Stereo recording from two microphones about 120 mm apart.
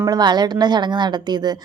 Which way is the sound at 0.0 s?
35° right (ahead or behind).